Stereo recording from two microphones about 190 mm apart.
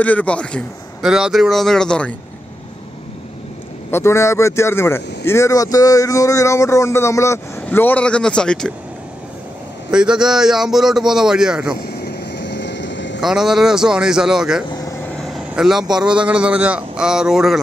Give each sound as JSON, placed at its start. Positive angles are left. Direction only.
{"t": 0.0, "sound": "a man's voice", "side_deg": 10}
{"t": 3.9, "sound": "speech", "side_deg": 15}
{"t": 9.8, "sound": "a man's voice", "side_deg": -5}
{"t": 11.8, "sound": "vehicle", "side_deg": 55}
{"t": 13.2, "sound": "a man's voice", "side_deg": 0}
{"t": 14.7, "sound": "vehicle", "side_deg": 15}
{"t": 15.9, "sound": "a man's voice", "side_deg": -5}